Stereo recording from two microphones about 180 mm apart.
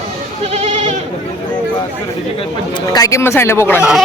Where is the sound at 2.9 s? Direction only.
15° left (ahead or behind).